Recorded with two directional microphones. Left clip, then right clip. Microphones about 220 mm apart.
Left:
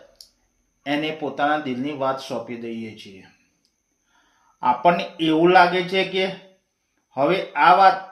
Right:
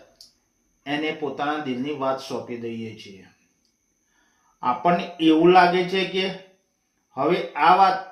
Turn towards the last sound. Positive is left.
turn(degrees=50)  # may be behind; listen again after turning